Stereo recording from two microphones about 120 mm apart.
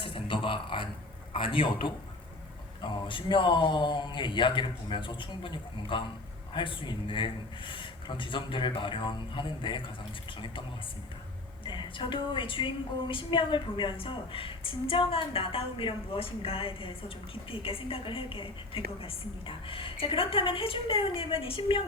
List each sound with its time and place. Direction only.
0.0 s a sound: 45° left (ahead or behind)
1.3 s a woman's voice: 45° left (ahead or behind)
2.8 s a woman's voice: 40° left (ahead or behind)
11.6 s a woman's voice: 40° left (ahead or behind)